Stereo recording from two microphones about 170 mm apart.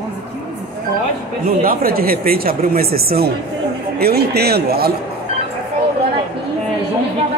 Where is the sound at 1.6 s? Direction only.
60° right (ahead or behind).